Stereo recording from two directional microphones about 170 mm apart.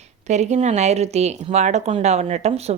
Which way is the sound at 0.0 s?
40° right (ahead or behind).